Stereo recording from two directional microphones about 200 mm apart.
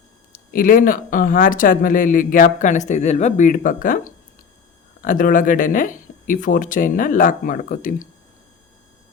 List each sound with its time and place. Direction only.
0.3 s speech: 45° left (ahead or behind)